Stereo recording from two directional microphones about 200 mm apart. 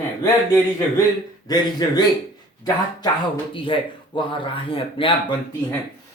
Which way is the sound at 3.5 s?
25° left (ahead or behind).